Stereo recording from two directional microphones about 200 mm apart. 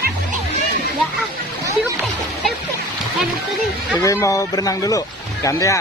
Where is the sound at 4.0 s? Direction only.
15° left (ahead or behind).